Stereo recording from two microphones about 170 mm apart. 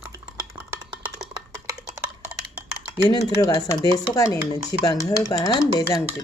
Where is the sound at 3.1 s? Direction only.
20° left (ahead or behind).